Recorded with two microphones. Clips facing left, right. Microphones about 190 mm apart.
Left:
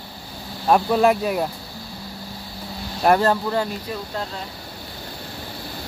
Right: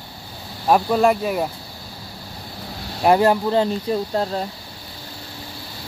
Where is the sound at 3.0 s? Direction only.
15° right (ahead or behind).